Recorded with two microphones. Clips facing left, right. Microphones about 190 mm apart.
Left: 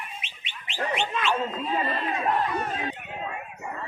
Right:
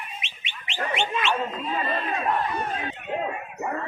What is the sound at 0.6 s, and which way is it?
Gargling, 85° right.